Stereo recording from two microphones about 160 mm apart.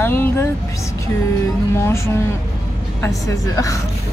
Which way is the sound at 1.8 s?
15° left (ahead or behind).